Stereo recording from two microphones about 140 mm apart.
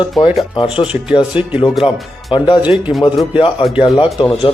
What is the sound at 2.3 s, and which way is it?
Speech, 35° left (ahead or behind).